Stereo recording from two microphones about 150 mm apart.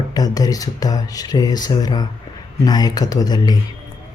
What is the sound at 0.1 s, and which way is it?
Speech, 25° left (ahead or behind).